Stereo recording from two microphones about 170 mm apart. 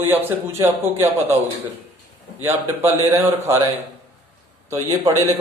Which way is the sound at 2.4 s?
15° right (ahead or behind).